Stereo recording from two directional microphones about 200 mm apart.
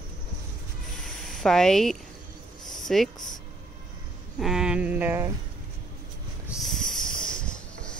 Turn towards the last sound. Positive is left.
turn(degrees=5)  # may be behind; listen again after turning